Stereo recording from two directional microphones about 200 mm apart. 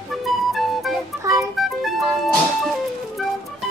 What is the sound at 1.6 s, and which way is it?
Music, centre (ahead or behind).